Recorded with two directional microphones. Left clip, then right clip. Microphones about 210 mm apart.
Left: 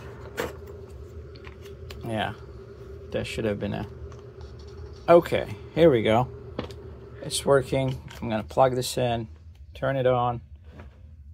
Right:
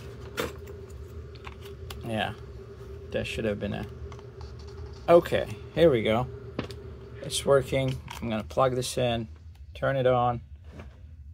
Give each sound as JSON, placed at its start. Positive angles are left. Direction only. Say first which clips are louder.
{"t": 2.0, "sound": "speech", "louder": "left 1 dB", "side_deg": 15}
{"t": 5.0, "sound": "speech", "louder": "left 2 dB", "side_deg": 15}
{"t": 7.2, "sound": "speech", "louder": "left 1 dB", "side_deg": 10}